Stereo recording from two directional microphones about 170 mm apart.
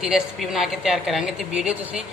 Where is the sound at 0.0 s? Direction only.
Centre (ahead or behind).